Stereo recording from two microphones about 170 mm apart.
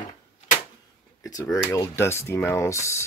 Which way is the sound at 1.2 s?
20° left (ahead or behind).